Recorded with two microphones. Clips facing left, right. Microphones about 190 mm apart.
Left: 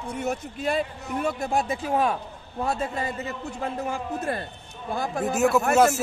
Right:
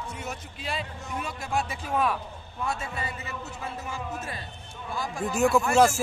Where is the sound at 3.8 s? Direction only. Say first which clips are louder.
Left 8 dB; 60° left (ahead or behind).